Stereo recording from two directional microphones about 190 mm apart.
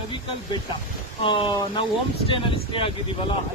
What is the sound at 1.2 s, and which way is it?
Speech, 25° left (ahead or behind).